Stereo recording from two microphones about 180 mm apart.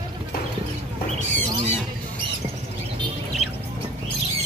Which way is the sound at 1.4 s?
35° right (ahead or behind).